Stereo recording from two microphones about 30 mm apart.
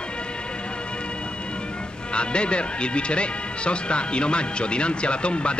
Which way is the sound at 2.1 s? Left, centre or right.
Left.